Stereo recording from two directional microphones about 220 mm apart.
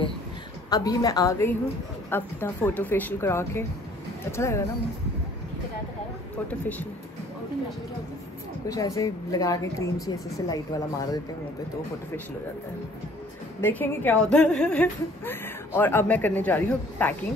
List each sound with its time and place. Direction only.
0.7 s a woman's voice: 15° left (ahead or behind)
8.6 s a woman's voice: 15° left (ahead or behind)
13.6 s a woman's voice: 10° left (ahead or behind)